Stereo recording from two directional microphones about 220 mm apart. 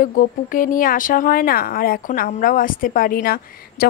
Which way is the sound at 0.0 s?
40° left (ahead or behind).